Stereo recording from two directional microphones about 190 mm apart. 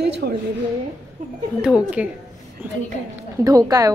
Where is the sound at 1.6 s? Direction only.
5° right (ahead or behind).